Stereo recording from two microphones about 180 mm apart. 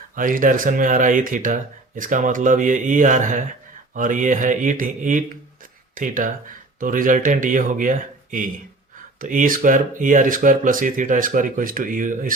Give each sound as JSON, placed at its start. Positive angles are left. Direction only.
{"t": 0.2, "sound": "speech", "side_deg": -50}